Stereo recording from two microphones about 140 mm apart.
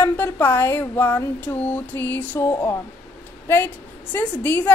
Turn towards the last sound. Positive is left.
turn(degrees=15)  # may be behind; listen again after turning